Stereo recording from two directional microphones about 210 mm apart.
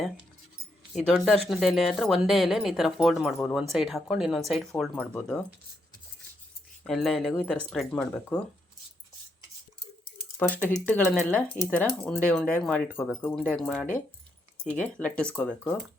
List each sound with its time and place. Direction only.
1.0 s speech: centre (ahead or behind)
6.8 s speech: centre (ahead or behind)
10.3 s speech: 10° left (ahead or behind)
14.9 s speech: 5° left (ahead or behind)